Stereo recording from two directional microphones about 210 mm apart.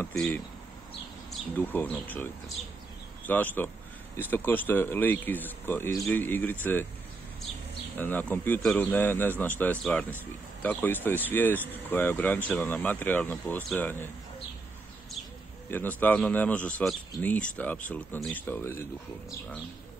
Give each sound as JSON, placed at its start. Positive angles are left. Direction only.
{"t": 1.3, "sound": "speech", "side_deg": 10}
{"t": 3.3, "sound": "speech", "side_deg": 10}
{"t": 8.0, "sound": "speech", "side_deg": 10}
{"t": 15.7, "sound": "speech", "side_deg": 10}